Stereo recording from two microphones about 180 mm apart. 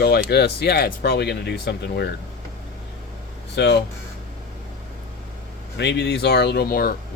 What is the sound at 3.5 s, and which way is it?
Speech, 70° left (ahead or behind).